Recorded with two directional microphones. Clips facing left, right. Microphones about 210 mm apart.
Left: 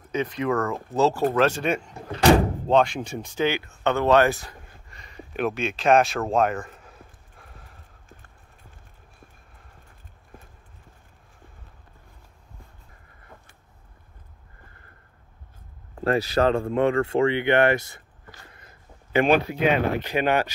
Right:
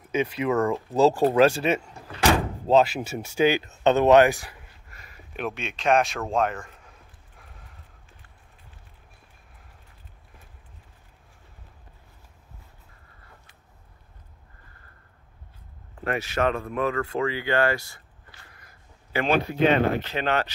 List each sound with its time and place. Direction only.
0.1 s speech: 10° right (ahead or behind)
6.2 s speech: 45° left (ahead or behind)
16.0 s speech: 35° left (ahead or behind)
18.5 s a sound: 25° left (ahead or behind)
19.6 s speech: 10° left (ahead or behind)